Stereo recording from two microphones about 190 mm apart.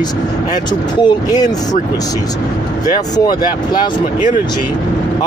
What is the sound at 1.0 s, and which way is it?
Speech, 20° left (ahead or behind).